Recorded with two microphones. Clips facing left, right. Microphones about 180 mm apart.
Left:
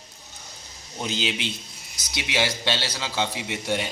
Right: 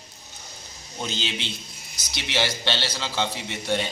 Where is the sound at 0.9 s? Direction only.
10° left (ahead or behind).